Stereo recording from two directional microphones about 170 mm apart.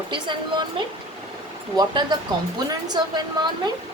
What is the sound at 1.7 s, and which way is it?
A woman's voice, 25° right (ahead or behind).